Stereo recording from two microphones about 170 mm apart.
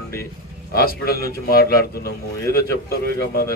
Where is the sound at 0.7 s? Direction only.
60° left (ahead or behind).